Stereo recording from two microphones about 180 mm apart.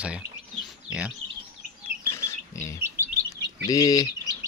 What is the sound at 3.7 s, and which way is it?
Speech, 20° left (ahead or behind).